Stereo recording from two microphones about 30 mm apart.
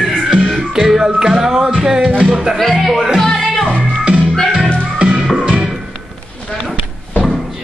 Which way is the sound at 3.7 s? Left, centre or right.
Right.